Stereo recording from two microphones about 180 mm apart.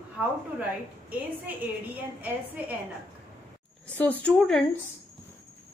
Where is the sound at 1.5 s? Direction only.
10° right (ahead or behind).